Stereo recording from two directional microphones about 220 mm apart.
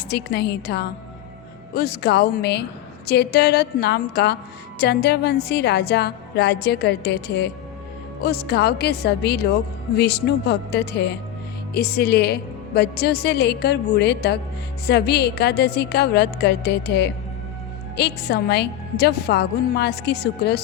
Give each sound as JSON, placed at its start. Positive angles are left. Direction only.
{"t": 0.1, "sound": "a woman's voice", "side_deg": 50}